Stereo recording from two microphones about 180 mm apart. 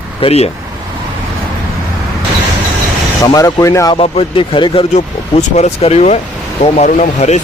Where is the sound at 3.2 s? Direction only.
20° left (ahead or behind).